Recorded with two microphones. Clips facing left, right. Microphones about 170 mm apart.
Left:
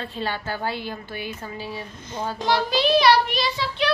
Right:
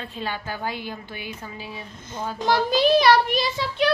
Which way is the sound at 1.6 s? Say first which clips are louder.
Left 4 dB; 40° left (ahead or behind).